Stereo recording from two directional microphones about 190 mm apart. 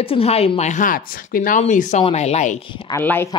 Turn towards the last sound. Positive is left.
turn(degrees=10)  # may be behind; listen again after turning